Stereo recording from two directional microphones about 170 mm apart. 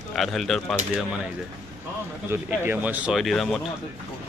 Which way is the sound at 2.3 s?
10° right (ahead or behind).